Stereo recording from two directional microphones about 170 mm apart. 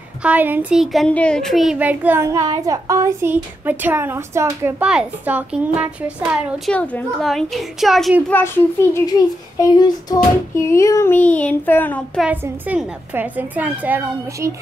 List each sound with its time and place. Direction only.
0.2 s a child's voice: 10° right (ahead or behind)
6.7 s a child's voice: 10° left (ahead or behind)
8.9 s child singing: 20° left (ahead or behind)
12.2 s a child's voice: 10° right (ahead or behind)